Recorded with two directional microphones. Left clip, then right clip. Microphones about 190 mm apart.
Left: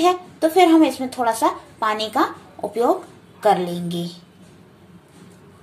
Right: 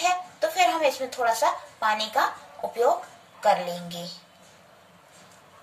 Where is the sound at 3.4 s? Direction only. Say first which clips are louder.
Left 5 dB; 35° left (ahead or behind).